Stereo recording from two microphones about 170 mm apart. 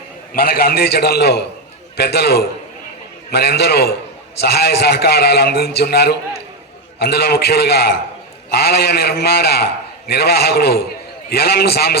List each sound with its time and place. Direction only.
0.3 s a man's voice: 65° left (ahead or behind)